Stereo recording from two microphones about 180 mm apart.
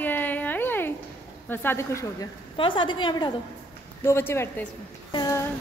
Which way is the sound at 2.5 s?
25° left (ahead or behind).